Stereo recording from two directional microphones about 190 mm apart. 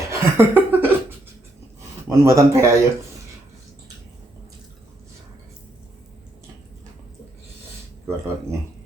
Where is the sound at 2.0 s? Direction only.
15° right (ahead or behind).